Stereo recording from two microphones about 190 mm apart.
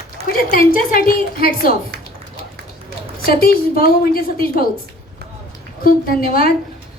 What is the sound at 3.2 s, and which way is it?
A woman's voice, 50° left (ahead or behind).